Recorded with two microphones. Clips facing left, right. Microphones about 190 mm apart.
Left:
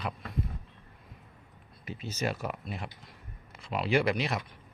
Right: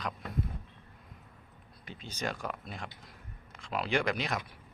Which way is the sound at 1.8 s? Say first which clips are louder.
Left 4 dB; 5° left (ahead or behind).